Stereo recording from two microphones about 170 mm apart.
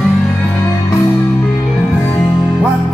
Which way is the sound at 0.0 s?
5° left (ahead or behind).